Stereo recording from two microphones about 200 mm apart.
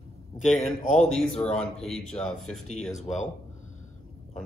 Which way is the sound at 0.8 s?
40° left (ahead or behind).